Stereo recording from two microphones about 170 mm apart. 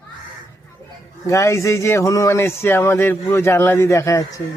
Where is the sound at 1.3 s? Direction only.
15° left (ahead or behind).